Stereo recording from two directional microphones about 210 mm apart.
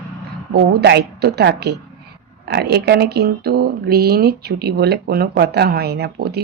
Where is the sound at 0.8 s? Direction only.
50° right (ahead or behind).